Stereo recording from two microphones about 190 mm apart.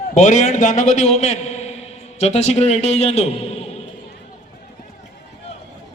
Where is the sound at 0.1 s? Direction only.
40° left (ahead or behind).